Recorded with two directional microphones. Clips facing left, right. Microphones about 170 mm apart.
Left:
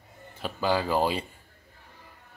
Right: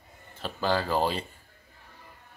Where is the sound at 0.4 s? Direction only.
10° left (ahead or behind).